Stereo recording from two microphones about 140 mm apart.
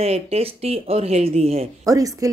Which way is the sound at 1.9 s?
25° right (ahead or behind).